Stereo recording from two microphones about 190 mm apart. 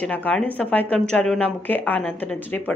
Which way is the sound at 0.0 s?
5° left (ahead or behind).